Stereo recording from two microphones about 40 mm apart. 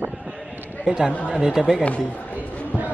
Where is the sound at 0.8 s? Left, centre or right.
Centre.